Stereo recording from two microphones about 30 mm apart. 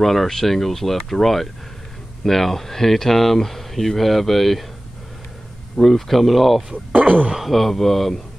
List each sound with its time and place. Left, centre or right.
0.0 s speech: centre
5.8 s speech: centre
6.9 s speech: right
7.3 s speech: centre